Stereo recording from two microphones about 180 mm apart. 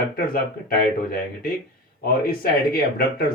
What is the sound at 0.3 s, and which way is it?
Speech, 55° left (ahead or behind).